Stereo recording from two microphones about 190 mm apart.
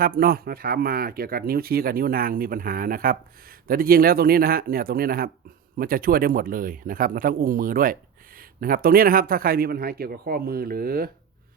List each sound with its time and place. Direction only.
0.0 s speech: 50° right (ahead or behind)